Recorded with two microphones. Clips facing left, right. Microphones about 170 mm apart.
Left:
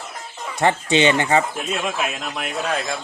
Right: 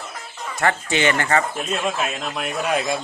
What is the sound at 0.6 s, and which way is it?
Speech, 20° left (ahead or behind).